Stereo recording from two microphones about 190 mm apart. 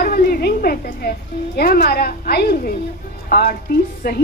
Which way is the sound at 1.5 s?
55° left (ahead or behind).